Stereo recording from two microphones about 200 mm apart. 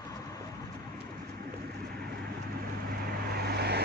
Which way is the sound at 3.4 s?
55° right (ahead or behind).